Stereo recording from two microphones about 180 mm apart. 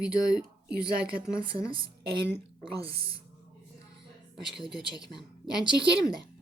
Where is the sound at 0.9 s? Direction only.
5° right (ahead or behind).